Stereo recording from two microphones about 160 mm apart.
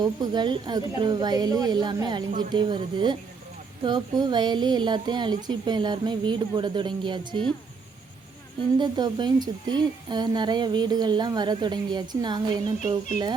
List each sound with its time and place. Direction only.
0.0 s a woman's voice: 25° right (ahead or behind)
8.8 s a woman's voice: 30° right (ahead or behind)